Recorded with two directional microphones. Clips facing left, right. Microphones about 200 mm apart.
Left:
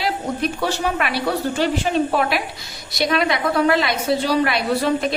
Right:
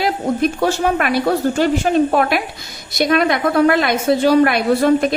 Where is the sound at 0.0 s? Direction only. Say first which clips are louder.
Right 5 dB; 50° right (ahead or behind).